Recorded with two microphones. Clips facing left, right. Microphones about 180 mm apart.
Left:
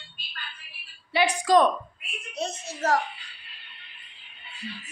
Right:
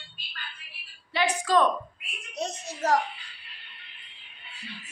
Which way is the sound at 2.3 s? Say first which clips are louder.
Left 1 dB; 15° right (ahead or behind).